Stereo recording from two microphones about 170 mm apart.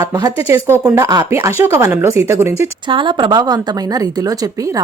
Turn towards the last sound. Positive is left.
turn(degrees=-20)  # may be behind; listen again after turning